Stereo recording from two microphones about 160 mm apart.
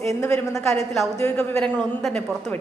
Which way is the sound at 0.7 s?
Centre (ahead or behind).